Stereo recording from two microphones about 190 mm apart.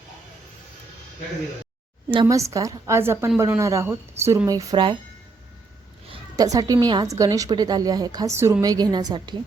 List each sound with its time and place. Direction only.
2.2 s a woman's voice: 15° right (ahead or behind)
6.1 s a woman's voice: 20° right (ahead or behind)